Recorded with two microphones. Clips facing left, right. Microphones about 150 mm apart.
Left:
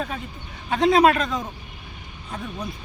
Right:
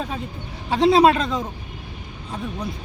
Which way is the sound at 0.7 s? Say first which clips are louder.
Right 2 dB; 30° right (ahead or behind).